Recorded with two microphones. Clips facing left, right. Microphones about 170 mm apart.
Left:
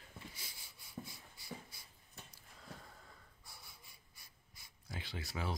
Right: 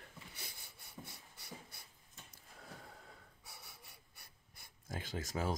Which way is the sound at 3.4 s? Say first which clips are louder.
Right 2 dB; 70° right (ahead or behind).